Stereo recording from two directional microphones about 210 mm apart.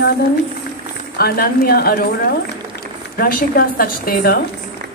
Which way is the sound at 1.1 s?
45° left (ahead or behind).